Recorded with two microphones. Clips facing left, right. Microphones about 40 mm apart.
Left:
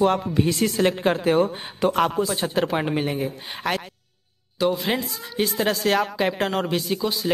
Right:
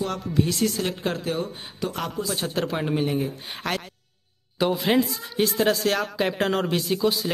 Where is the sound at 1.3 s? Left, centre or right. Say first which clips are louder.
Left 8 dB; left.